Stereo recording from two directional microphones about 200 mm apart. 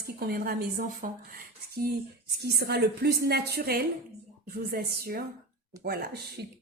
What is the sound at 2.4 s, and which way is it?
A woman's voice, 55° right (ahead or behind).